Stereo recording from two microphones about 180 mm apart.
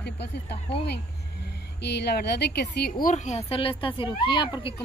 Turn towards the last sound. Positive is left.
turn(degrees=30)  # may be behind; listen again after turning